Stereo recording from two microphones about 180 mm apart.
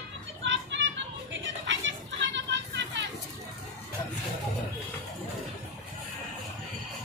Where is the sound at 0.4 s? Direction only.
90° right.